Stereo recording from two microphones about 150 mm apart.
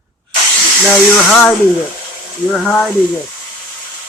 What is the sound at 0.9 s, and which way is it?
Speech, 10° left (ahead or behind).